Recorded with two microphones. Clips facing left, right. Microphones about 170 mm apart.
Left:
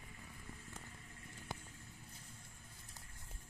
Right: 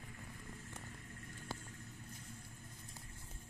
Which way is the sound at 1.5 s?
20° left (ahead or behind).